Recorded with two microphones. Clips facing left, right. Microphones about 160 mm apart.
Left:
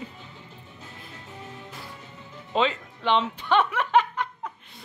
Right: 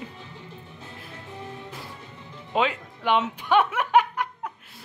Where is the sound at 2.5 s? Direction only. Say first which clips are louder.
Even; 10° right (ahead or behind).